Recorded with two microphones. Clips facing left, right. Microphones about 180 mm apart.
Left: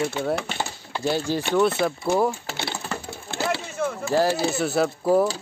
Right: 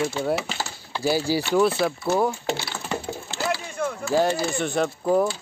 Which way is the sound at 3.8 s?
Centre (ahead or behind).